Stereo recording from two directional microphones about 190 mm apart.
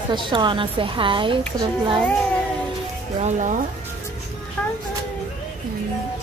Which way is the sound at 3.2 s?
40° right (ahead or behind).